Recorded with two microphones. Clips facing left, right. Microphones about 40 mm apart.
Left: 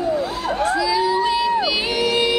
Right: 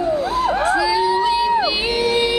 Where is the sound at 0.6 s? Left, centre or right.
Centre.